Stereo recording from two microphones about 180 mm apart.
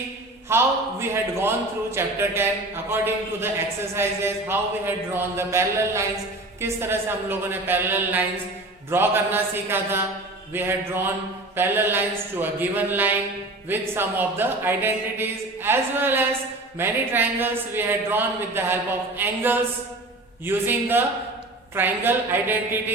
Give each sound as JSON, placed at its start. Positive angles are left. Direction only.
{"t": 0.4, "sound": "speech", "side_deg": -15}